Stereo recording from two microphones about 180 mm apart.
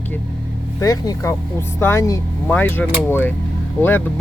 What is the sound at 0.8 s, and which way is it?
Speech, 20° left (ahead or behind).